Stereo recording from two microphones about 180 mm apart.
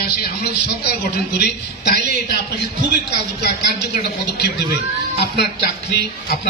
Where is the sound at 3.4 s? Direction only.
65° left (ahead or behind).